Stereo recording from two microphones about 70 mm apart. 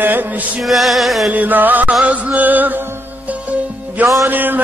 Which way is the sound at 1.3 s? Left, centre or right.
Right.